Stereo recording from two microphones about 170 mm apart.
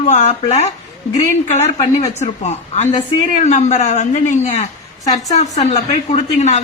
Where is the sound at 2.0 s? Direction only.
40° left (ahead or behind).